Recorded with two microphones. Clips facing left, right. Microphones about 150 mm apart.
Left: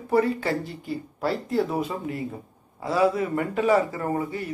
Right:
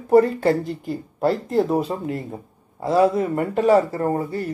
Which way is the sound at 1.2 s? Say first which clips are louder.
Right 5 dB; 45° right (ahead or behind).